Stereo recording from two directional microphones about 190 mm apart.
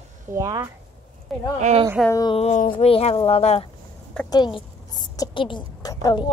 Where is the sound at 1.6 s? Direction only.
40° right (ahead or behind).